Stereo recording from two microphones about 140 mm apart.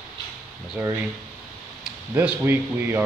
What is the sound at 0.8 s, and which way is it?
Speech, 10° right (ahead or behind).